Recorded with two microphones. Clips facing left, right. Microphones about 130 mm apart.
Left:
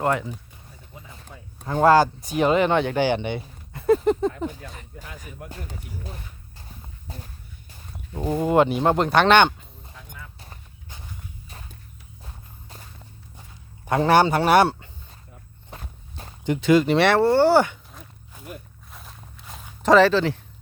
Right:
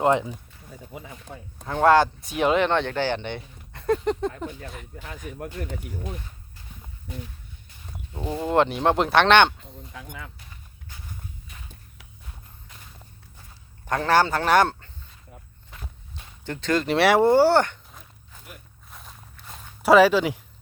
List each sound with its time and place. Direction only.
0.0 s speech: 20° right (ahead or behind)
1.6 s speech: 5° left (ahead or behind)
7.1 s speech: 35° left (ahead or behind)
8.4 s speech: 5° left (ahead or behind)
9.9 s a sound: 85° right
11.5 s a sound: 35° left (ahead or behind)
13.8 s speech: 15° left (ahead or behind)
15.7 s walk: 40° left (ahead or behind)
16.4 s speech: 15° left (ahead or behind)
17.2 s speech: 15° right (ahead or behind)
17.4 s walk: 5° left (ahead or behind); by 20.4 s 10° right (ahead or behind)